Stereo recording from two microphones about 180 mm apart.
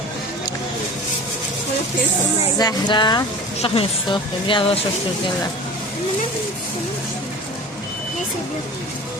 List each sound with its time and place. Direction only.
2.6 s speech: 25° left (ahead or behind)